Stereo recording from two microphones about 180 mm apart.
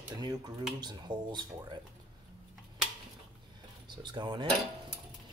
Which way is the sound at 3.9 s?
25° right (ahead or behind).